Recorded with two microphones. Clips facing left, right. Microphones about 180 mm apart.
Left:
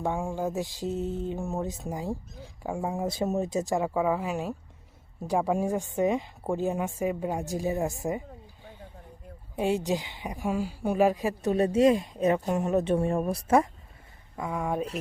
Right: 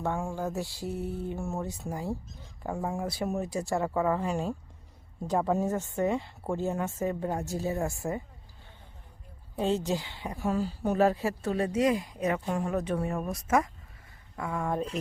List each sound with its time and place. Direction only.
0.0 s speech: 15° left (ahead or behind)
9.6 s a woman's voice: 15° left (ahead or behind); by 13.7 s 30° left (ahead or behind)
14.3 s speech: 15° left (ahead or behind)